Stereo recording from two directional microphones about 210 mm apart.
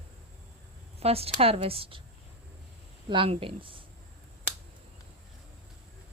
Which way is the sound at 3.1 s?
25° right (ahead or behind).